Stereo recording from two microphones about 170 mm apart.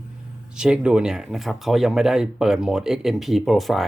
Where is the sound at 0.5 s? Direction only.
5° right (ahead or behind).